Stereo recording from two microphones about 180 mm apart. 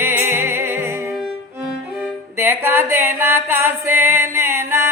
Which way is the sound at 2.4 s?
15° right (ahead or behind).